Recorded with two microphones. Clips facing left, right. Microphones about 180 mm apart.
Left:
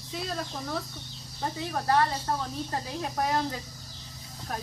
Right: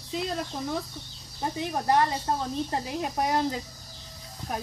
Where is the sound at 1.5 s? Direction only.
15° right (ahead or behind).